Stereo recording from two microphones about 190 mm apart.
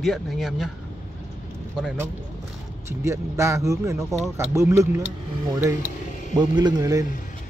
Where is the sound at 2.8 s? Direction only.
15° right (ahead or behind).